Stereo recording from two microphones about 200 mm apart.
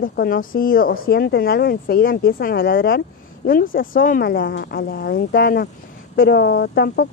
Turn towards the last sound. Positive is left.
turn(degrees=50)  # may be behind; listen again after turning